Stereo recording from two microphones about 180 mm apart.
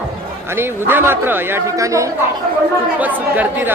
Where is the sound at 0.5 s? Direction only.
10° right (ahead or behind).